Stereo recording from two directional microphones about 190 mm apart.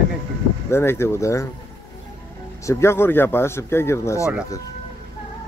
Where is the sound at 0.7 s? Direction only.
15° left (ahead or behind).